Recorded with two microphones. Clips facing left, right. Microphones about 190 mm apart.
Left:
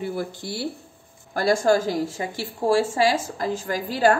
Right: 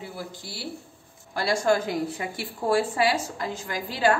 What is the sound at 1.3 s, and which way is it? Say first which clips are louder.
A woman's voice: left 4 dB; 45° left (ahead or behind).